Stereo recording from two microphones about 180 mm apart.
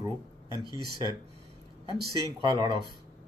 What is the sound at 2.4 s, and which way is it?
Speech, 25° right (ahead or behind).